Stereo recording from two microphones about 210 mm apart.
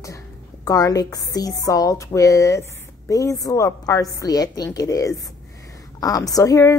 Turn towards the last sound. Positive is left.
turn(degrees=15)  # may be behind; listen again after turning